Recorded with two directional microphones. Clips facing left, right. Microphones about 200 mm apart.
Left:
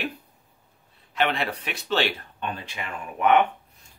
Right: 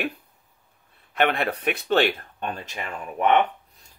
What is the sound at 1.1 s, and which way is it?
Speech, 55° right (ahead or behind).